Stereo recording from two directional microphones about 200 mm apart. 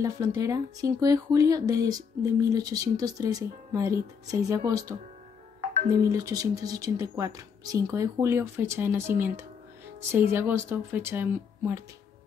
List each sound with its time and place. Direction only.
0.0 s a woman's voice: 15° right (ahead or behind)
5.9 s a woman's voice: 15° right (ahead or behind)